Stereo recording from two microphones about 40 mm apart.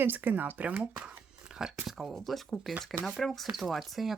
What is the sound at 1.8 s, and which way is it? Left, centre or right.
Speech, centre.